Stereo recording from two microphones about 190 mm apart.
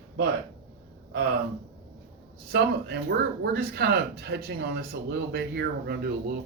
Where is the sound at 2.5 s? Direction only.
60° right (ahead or behind).